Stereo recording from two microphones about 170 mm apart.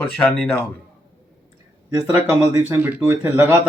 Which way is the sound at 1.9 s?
20° right (ahead or behind).